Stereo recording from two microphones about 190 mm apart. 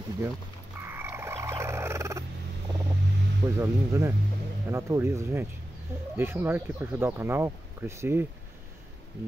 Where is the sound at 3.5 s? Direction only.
15° right (ahead or behind).